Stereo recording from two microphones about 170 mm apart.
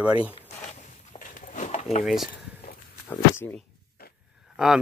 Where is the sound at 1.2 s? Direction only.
50° left (ahead or behind).